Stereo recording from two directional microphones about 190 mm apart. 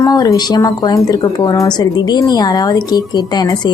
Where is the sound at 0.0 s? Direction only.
20° left (ahead or behind).